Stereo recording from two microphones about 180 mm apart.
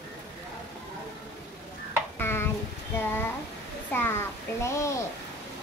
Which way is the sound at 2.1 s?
15° left (ahead or behind).